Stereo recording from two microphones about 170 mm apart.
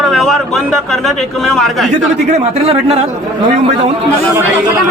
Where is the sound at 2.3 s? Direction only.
40° right (ahead or behind).